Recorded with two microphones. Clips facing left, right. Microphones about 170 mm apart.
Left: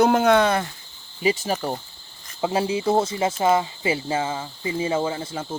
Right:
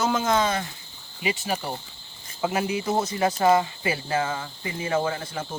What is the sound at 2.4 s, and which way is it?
Speech, 30° left (ahead or behind).